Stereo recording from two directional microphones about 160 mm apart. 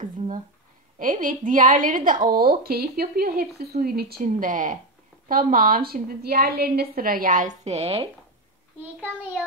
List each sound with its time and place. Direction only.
0.9 s a woman's voice: 55° right (ahead or behind); by 8.1 s 40° right (ahead or behind)